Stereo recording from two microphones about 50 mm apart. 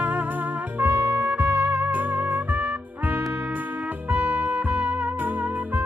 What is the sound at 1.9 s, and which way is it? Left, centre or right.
Music, right.